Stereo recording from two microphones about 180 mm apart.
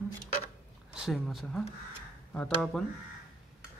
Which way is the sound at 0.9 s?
Centre (ahead or behind).